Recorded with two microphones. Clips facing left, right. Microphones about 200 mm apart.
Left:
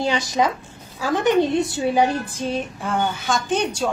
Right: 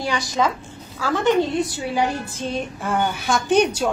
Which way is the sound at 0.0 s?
20° left (ahead or behind).